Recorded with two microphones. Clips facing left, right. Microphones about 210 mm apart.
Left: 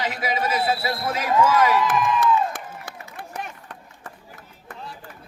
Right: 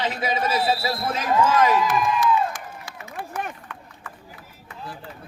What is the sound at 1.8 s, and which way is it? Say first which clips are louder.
Music: left 1 dB; 55° left (ahead or behind).